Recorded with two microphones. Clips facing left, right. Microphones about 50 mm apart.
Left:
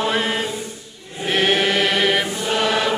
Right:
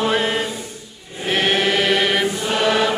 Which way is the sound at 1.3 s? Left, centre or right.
Centre.